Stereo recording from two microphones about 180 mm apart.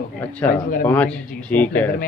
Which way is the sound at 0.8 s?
10° left (ahead or behind).